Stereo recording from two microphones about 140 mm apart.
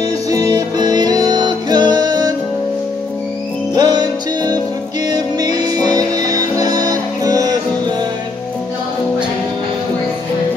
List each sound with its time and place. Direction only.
0.3 s music: 25° right (ahead or behind)
3.7 s music: 30° right (ahead or behind)
5.1 s music: 30° right (ahead or behind)